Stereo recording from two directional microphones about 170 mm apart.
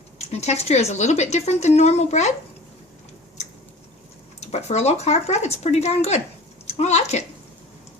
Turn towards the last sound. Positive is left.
turn(degrees=40)  # may be behind; listen again after turning